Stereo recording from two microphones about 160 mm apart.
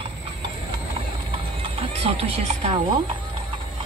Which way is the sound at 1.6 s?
40° right (ahead or behind).